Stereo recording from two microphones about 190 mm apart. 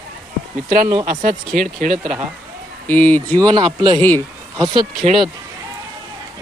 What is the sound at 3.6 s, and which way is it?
Speech, 25° right (ahead or behind).